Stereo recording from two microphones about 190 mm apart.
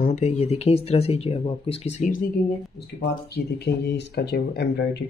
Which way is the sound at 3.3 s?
60° left (ahead or behind).